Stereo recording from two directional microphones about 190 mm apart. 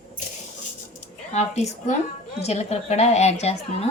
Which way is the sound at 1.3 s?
35° left (ahead or behind).